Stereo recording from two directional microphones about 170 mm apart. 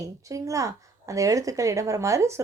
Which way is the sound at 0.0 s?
20° right (ahead or behind).